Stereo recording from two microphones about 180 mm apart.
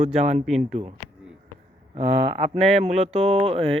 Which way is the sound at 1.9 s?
30° right (ahead or behind).